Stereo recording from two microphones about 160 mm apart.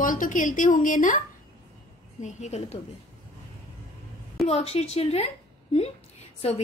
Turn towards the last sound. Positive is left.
turn(degrees=40)  # may be behind; listen again after turning